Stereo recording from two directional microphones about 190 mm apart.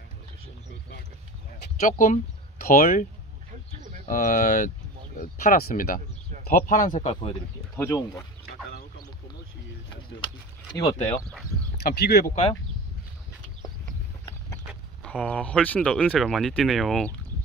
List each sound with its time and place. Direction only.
1.8 s speech: 45° left (ahead or behind)
4.1 s speech: 45° left (ahead or behind)
7.2 s speech: 25° left (ahead or behind)
10.8 s speech: 15° left (ahead or behind)
11.8 s speech: 55° left (ahead or behind)
15.0 s speech: 5° left (ahead or behind)